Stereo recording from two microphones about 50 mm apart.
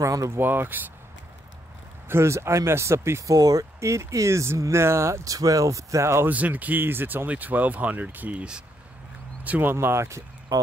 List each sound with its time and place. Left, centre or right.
0.4 s speech: right
2.0 s speech: right
6.2 s speech: right
7.2 s speech: right
9.7 s speech: right